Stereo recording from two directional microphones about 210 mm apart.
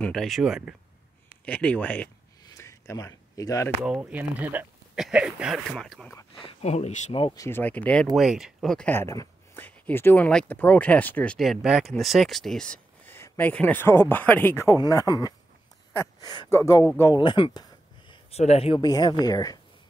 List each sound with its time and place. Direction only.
0.0 s speech: centre (ahead or behind)
2.4 s a sound: 15° left (ahead or behind)
3.8 s speech: 5° right (ahead or behind)
6.4 s speech: 30° left (ahead or behind)